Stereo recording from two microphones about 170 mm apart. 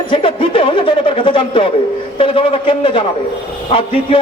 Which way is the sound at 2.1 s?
30° left (ahead or behind).